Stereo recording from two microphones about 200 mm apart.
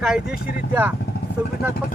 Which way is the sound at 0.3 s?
50° left (ahead or behind).